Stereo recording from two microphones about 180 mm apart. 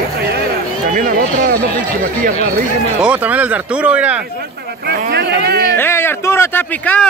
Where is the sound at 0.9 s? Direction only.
45° right (ahead or behind).